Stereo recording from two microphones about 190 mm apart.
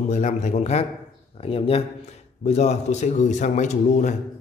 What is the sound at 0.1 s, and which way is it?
A man's voice, 40° left (ahead or behind).